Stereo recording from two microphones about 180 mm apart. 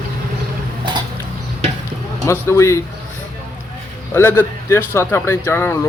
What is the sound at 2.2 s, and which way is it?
Speech, 15° left (ahead or behind).